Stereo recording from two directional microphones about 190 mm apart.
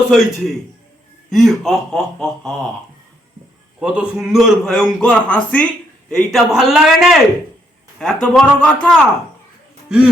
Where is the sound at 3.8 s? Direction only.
5° right (ahead or behind).